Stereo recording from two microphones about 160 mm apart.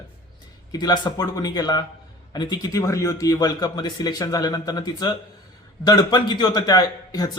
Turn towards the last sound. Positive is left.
turn(degrees=25)  # may be behind; listen again after turning